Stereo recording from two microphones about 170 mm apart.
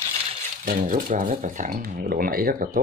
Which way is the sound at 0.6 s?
55° right (ahead or behind).